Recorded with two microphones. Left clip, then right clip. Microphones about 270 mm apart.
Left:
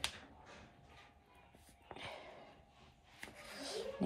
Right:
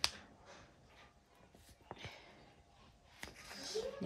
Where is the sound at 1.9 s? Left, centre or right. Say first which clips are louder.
Left 1 dB; right.